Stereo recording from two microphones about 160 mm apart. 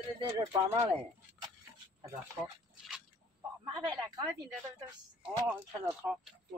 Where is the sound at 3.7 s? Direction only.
25° right (ahead or behind).